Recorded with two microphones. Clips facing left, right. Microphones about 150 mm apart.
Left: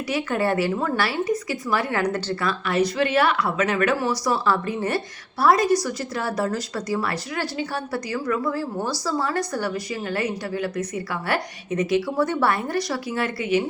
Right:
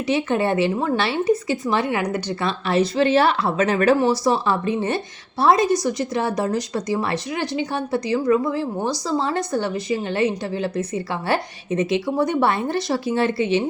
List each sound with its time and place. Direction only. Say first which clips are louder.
0.1 s a woman's voice: right 3 dB; 25° right (ahead or behind)